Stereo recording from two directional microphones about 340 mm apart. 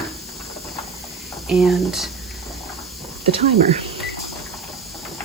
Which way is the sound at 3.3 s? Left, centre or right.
Centre.